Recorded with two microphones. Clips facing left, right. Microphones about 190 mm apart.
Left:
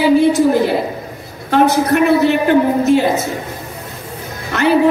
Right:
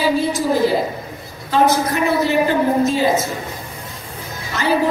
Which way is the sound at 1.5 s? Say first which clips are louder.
Left 4 dB; 65° left (ahead or behind).